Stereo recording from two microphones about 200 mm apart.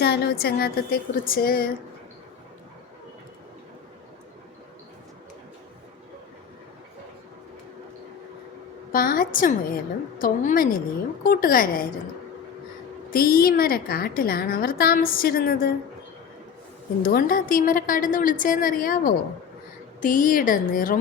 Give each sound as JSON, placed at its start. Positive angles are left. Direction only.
{"t": 0.0, "sound": "a woman's voice", "side_deg": 50}
{"t": 8.9, "sound": "a woman's voice", "side_deg": 45}
{"t": 13.1, "sound": "a woman's voice", "side_deg": 45}
{"t": 17.0, "sound": "a woman's voice", "side_deg": 45}